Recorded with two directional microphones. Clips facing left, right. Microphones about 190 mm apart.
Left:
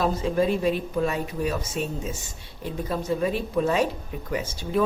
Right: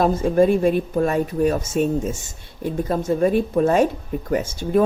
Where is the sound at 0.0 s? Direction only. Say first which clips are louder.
Right 6 dB; 50° right (ahead or behind).